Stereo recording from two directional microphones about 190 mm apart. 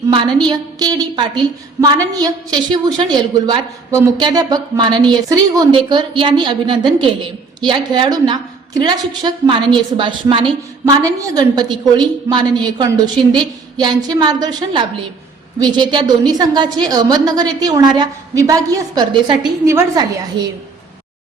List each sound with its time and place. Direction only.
0.1 s a woman's voice: 25° right (ahead or behind)